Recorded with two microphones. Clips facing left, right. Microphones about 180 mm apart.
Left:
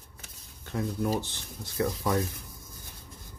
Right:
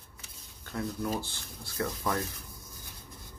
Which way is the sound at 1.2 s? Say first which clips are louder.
Left 3 dB; 20° left (ahead or behind).